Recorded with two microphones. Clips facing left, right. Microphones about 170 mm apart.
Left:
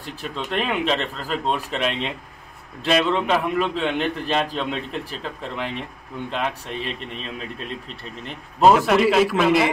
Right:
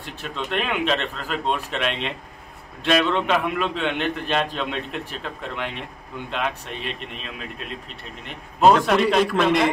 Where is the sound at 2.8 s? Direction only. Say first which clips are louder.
Even; 5° left (ahead or behind).